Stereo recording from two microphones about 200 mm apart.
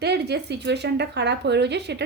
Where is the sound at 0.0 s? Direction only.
55° right (ahead or behind).